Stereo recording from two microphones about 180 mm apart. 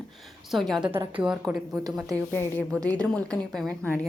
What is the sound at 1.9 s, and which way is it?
A woman's voice, 10° left (ahead or behind).